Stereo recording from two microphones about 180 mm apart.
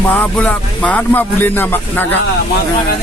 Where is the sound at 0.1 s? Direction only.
10° left (ahead or behind).